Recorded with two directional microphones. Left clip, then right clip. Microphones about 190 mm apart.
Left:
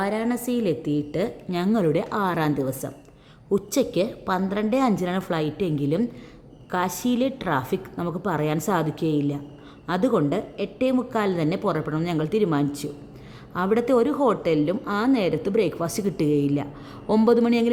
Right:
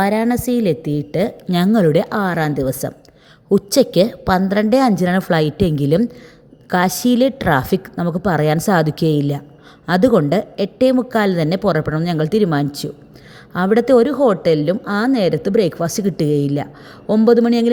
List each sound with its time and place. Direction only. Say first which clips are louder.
0.0 s a woman's voice: right 9 dB; 35° right (ahead or behind)